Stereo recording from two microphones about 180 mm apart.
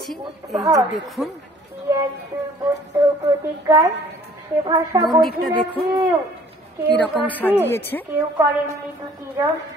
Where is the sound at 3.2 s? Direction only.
20° right (ahead or behind).